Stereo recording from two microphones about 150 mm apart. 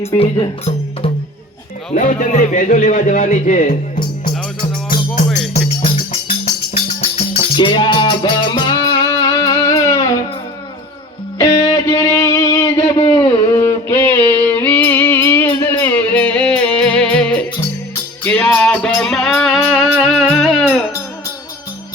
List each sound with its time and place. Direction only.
0.0 s speech: 40° left (ahead or behind)
2.0 s speech: 60° left (ahead or behind)
5.5 s music: 45° left (ahead or behind); by 10.1 s 20° left (ahead or behind)
11.3 s music: 25° left (ahead or behind)
13.5 s music: 15° left (ahead or behind); by 20.8 s centre (ahead or behind)